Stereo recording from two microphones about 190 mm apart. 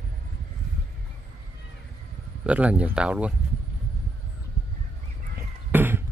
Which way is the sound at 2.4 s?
5° right (ahead or behind).